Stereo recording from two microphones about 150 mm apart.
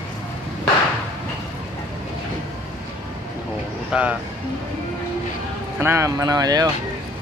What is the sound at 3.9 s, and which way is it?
Speech, 5° right (ahead or behind).